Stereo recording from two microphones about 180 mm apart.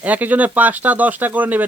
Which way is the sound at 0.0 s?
10° right (ahead or behind).